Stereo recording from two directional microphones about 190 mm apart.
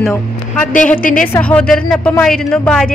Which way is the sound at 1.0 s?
45° left (ahead or behind).